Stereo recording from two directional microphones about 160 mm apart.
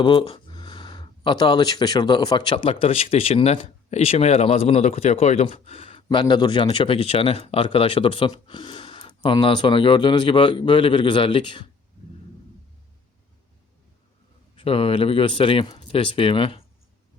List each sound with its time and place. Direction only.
0.0 s speech: 30° left (ahead or behind)
14.5 s speech: 35° left (ahead or behind)